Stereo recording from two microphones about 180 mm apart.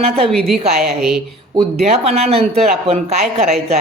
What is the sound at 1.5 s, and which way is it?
Speech, 35° right (ahead or behind).